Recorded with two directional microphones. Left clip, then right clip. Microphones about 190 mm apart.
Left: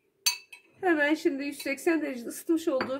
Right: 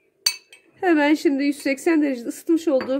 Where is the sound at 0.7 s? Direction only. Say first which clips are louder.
Right 7 dB; 50° right (ahead or behind).